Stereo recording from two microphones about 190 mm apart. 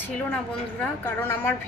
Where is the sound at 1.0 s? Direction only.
10° left (ahead or behind).